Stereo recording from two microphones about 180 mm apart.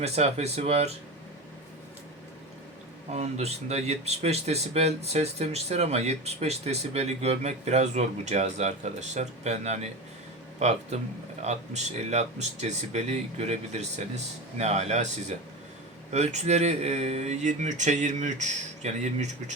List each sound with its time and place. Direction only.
0.0 s speech: 35° right (ahead or behind)
3.1 s speech: 35° right (ahead or behind)